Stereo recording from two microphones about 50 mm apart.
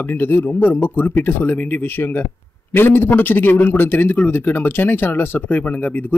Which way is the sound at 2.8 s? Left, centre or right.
Left.